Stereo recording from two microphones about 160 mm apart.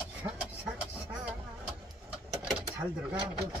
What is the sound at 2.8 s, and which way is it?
Speech, 10° right (ahead or behind).